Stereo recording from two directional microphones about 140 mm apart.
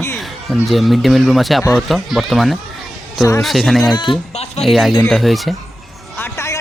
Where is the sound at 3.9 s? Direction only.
35° left (ahead or behind).